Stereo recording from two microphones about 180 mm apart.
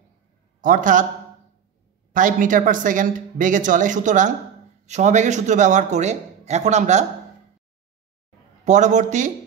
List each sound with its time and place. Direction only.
0.6 s a man's voice: 45° right (ahead or behind)
2.1 s speech: 45° right (ahead or behind)
8.6 s speech: 40° right (ahead or behind)